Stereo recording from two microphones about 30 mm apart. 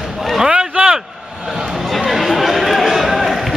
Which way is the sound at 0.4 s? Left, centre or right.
Right.